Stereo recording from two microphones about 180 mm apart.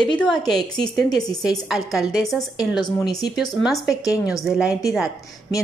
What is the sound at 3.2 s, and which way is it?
A woman's voice, centre (ahead or behind).